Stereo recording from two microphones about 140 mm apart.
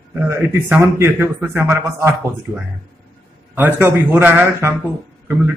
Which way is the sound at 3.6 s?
15° right (ahead or behind).